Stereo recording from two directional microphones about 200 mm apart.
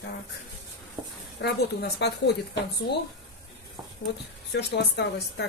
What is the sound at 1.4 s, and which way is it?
Speech, 55° left (ahead or behind).